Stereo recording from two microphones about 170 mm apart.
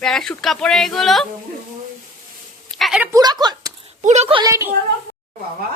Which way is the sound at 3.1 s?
25° right (ahead or behind).